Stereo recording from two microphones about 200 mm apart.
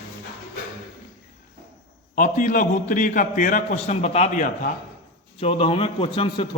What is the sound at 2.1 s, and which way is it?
A man's voice, 40° left (ahead or behind).